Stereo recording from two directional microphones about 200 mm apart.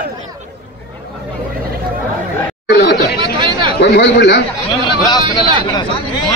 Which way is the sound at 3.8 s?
60° left (ahead or behind).